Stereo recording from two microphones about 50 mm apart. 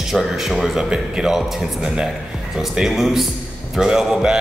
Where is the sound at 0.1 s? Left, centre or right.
Centre.